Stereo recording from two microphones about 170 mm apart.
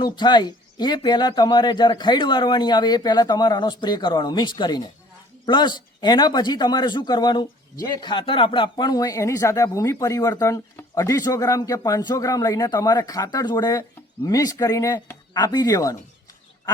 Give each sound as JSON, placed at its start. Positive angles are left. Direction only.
{"t": 0.0, "sound": "a man's voice", "side_deg": 25}